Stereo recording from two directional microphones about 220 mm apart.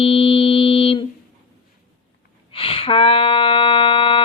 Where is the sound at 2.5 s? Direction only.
25° left (ahead or behind).